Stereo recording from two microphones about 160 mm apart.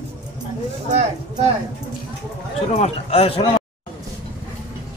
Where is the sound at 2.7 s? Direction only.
40° left (ahead or behind).